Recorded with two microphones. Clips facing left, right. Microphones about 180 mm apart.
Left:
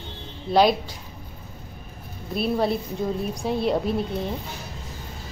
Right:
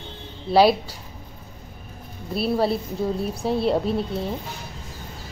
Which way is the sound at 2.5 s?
5° right (ahead or behind).